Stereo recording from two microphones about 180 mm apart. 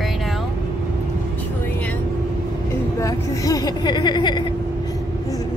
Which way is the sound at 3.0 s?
20° left (ahead or behind).